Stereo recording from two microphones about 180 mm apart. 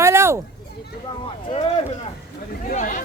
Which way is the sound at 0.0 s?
15° right (ahead or behind).